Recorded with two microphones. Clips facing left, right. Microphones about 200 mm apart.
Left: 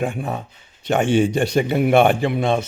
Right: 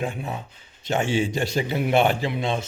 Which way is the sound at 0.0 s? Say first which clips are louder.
Left 5 dB; 55° left (ahead or behind).